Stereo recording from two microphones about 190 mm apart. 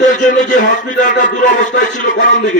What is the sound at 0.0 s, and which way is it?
A man's voice, 40° left (ahead or behind).